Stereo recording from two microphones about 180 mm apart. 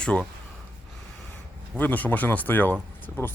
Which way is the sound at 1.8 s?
10° left (ahead or behind).